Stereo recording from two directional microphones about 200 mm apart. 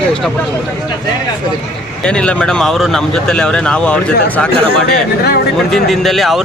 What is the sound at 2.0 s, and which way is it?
Speech, 5° left (ahead or behind).